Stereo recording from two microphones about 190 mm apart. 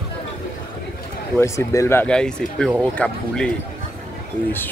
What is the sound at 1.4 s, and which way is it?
Speech, 15° left (ahead or behind).